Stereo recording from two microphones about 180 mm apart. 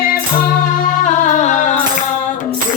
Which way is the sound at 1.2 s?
45° left (ahead or behind).